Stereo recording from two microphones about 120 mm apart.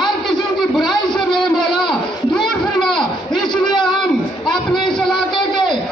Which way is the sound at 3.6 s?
40° left (ahead or behind).